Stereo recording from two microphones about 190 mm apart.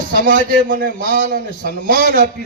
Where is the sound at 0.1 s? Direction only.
50° right (ahead or behind).